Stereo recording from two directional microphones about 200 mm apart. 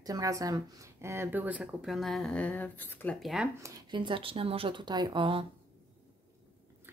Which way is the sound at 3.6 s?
20° right (ahead or behind).